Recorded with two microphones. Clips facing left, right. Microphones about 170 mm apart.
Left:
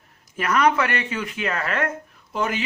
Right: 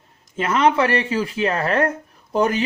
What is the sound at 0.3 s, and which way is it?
A man's voice, 25° right (ahead or behind).